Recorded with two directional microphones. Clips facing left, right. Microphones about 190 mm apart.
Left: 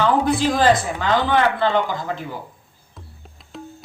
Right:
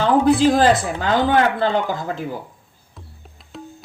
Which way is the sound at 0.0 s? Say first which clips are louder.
Right 4 dB; 40° right (ahead or behind).